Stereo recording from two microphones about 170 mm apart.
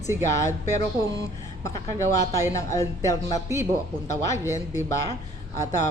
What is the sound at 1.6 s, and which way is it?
Speech, 20° left (ahead or behind).